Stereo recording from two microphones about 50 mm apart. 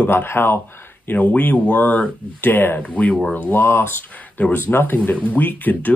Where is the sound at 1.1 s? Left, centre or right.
Left.